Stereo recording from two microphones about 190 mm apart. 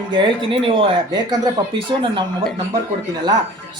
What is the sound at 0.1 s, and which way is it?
Speech, 25° right (ahead or behind).